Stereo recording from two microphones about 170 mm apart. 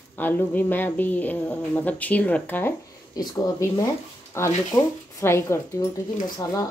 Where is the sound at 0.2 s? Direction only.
10° left (ahead or behind).